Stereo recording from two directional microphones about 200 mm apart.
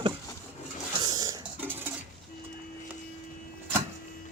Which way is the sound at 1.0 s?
20° right (ahead or behind).